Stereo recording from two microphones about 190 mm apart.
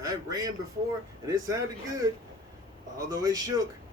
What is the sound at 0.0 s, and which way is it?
Speech, 20° right (ahead or behind).